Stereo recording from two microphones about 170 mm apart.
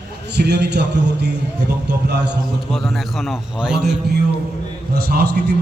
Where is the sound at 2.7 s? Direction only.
Centre (ahead or behind).